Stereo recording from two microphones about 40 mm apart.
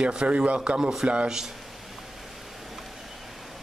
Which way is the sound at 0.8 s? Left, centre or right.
Centre.